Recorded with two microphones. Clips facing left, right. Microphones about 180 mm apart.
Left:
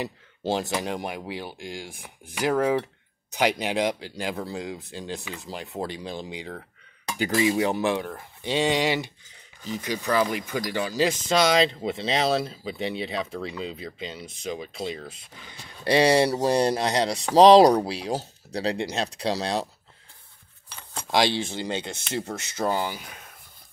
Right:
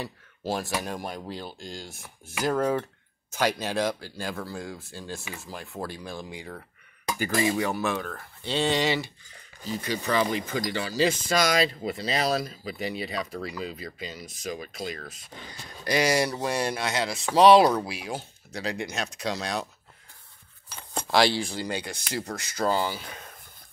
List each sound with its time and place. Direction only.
0.0 s speech: 25° left (ahead or behind)
21.1 s speech: 20° left (ahead or behind)